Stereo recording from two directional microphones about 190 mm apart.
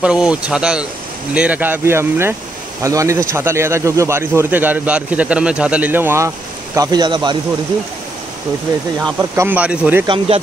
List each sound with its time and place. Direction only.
0.0 s speech: 5° right (ahead or behind); by 7.3 s 25° right (ahead or behind)
9.3 s speech: 10° right (ahead or behind)
10.0 s speech: 30° right (ahead or behind)